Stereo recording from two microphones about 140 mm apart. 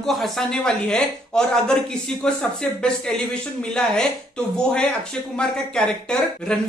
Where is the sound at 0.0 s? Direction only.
Centre (ahead or behind).